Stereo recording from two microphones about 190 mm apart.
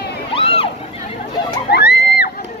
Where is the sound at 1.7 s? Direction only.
60° left (ahead or behind).